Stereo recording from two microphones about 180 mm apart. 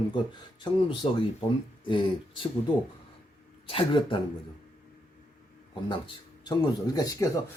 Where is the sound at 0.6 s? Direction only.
25° left (ahead or behind).